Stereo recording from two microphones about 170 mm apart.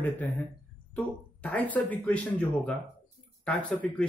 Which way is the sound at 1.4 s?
10° left (ahead or behind).